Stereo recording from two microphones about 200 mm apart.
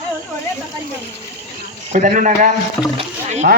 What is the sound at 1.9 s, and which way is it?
Speech, 40° right (ahead or behind).